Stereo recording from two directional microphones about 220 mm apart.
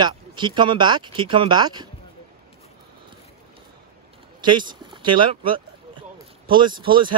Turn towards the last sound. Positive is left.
turn(degrees=-20)  # may be behind; listen again after turning